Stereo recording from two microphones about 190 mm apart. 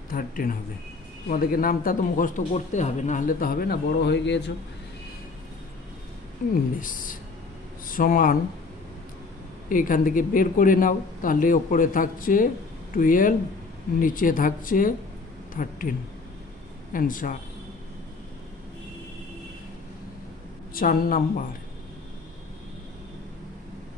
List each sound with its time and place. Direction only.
0.1 s a man's voice: 45° left (ahead or behind); by 4.5 s 65° left (ahead or behind)
6.5 s a man's voice: 45° left (ahead or behind)
9.7 s a man's voice: 45° left (ahead or behind)
16.9 s a man's voice: 45° left (ahead or behind)
20.7 s a man's voice: 50° left (ahead or behind)